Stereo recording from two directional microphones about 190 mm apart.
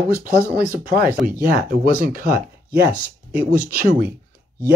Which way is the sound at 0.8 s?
50° right (ahead or behind).